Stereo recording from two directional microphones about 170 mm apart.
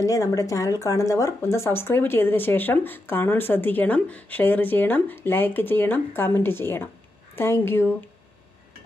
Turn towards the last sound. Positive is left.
turn(degrees=15)  # may be behind; listen again after turning